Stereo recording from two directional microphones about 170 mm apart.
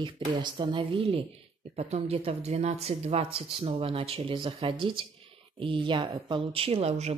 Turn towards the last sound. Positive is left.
turn(degrees=-35)  # may be behind; listen again after turning